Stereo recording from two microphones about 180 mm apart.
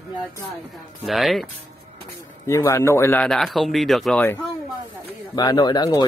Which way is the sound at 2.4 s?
15° left (ahead or behind).